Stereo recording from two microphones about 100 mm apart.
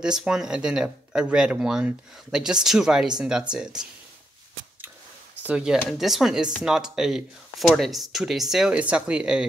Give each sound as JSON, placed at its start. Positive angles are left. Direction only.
{"t": 0.0, "sound": "speech", "side_deg": -5}
{"t": 5.4, "sound": "speech", "side_deg": -15}
{"t": 5.9, "sound": "speech", "side_deg": 0}